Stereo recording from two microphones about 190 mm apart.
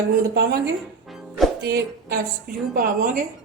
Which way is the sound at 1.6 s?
60° right (ahead or behind).